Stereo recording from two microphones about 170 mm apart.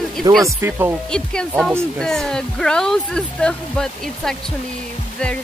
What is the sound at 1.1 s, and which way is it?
Speech, 5° left (ahead or behind).